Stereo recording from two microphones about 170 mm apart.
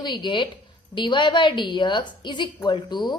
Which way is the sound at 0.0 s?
25° left (ahead or behind).